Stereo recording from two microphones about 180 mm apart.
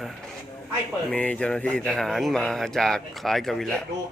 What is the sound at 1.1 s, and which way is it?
Speech, 5° left (ahead or behind).